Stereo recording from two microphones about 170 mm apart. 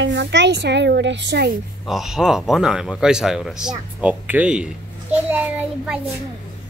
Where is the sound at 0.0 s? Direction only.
90° right.